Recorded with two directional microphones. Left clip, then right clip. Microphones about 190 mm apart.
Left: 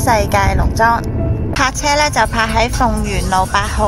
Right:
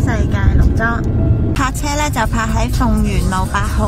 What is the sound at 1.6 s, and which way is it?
A woman's voice, centre (ahead or behind).